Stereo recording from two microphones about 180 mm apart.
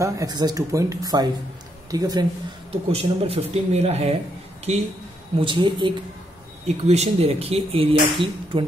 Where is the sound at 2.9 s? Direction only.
35° right (ahead or behind).